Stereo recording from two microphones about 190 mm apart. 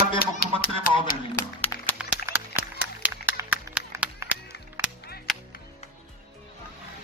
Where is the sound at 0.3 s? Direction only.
50° left (ahead or behind).